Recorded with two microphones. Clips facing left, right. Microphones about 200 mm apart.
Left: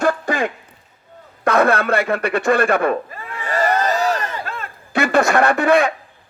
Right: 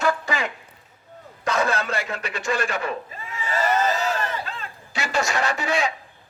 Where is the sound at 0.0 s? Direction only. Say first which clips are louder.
Left 5 dB; 50° left (ahead or behind).